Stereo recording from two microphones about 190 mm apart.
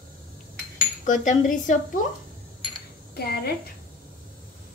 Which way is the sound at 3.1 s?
55° left (ahead or behind).